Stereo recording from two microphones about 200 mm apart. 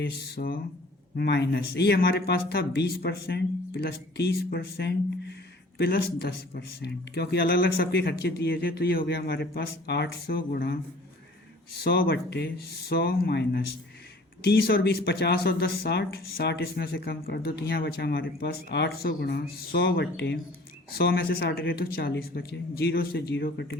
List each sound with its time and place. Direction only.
0.0 s speech: 55° left (ahead or behind)